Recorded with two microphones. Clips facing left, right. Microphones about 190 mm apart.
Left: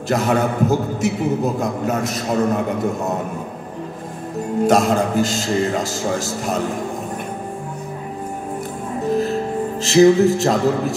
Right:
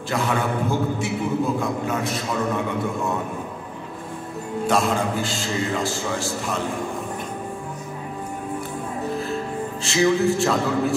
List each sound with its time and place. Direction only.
0.1 s a man's voice: 40° left (ahead or behind)
4.6 s a man's voice: 40° left (ahead or behind)
9.8 s a man's voice: 40° left (ahead or behind)